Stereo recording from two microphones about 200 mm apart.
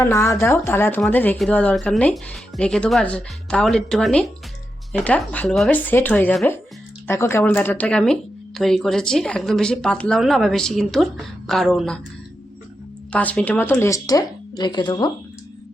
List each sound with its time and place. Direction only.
0.0 s speech: 15° left (ahead or behind)
13.1 s speech: 5° left (ahead or behind); by 15.1 s 20° left (ahead or behind)